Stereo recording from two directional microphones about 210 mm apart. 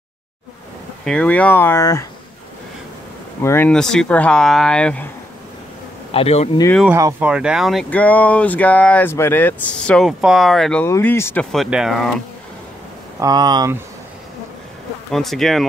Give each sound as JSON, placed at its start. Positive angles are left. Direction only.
{"t": 1.0, "sound": "speech", "side_deg": 5}
{"t": 3.4, "sound": "speech", "side_deg": 10}
{"t": 6.1, "sound": "speech", "side_deg": 30}
{"t": 6.8, "sound": "speech", "side_deg": -15}
{"t": 11.5, "sound": "speech", "side_deg": 0}
{"t": 13.2, "sound": "speech", "side_deg": -20}
{"t": 15.0, "sound": "speech", "side_deg": 0}